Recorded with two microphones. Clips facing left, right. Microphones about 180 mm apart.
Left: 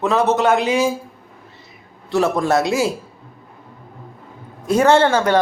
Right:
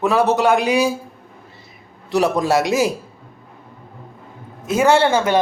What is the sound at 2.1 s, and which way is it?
Speech, 15° right (ahead or behind).